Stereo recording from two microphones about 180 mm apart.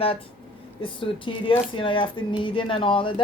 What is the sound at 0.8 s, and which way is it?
Speech, 30° left (ahead or behind).